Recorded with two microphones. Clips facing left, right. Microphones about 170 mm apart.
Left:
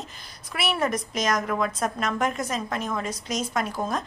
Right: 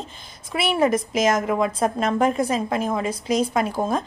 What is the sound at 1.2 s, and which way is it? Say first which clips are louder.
A woman's voice: right 4 dB; 25° right (ahead or behind).